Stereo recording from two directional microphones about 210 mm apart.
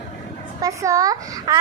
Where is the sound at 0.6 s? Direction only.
15° right (ahead or behind).